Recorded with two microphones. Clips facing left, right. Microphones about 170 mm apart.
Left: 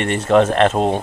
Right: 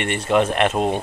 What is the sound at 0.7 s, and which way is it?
Speech, 20° left (ahead or behind).